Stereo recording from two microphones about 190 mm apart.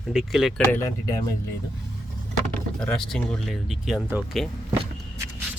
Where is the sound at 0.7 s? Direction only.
15° left (ahead or behind).